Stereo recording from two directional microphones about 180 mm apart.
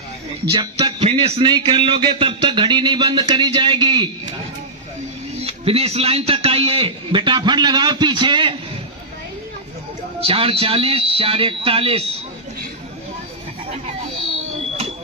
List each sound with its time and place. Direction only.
0.5 s a man's voice: 25° right (ahead or behind)
5.4 s a man's voice: 35° right (ahead or behind)
10.2 s speech: 30° right (ahead or behind)